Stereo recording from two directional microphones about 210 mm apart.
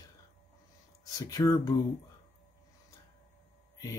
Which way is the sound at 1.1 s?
15° left (ahead or behind).